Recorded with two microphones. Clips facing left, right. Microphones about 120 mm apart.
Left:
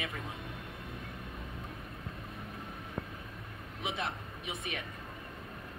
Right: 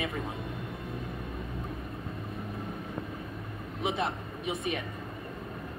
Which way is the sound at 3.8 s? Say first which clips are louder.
Right 6 dB; 45° right (ahead or behind).